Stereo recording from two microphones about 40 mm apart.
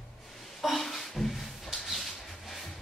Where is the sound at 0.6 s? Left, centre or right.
Centre.